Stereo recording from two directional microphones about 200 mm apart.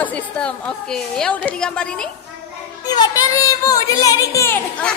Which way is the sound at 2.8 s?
20° left (ahead or behind).